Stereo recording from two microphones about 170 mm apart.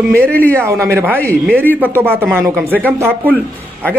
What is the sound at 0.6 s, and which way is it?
A man's voice, 15° right (ahead or behind).